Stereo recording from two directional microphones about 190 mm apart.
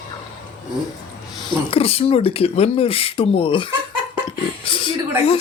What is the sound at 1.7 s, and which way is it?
Speech, 30° left (ahead or behind).